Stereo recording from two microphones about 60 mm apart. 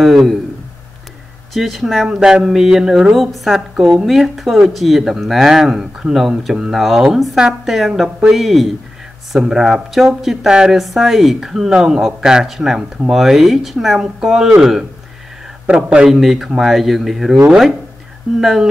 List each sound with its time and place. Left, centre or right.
0.0 s a woman's voice: centre
1.5 s a woman's voice: centre
2.0 s a woman's voice: centre
15.6 s a man's voice: centre
16.1 s a woman's voice: centre